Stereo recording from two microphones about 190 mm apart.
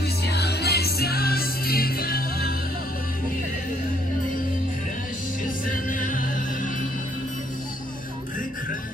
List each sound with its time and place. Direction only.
0.3 s music: 60° left (ahead or behind)
5.7 s music: 45° left (ahead or behind)